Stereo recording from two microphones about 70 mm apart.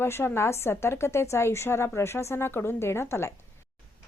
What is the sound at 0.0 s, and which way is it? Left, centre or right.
Speech, left.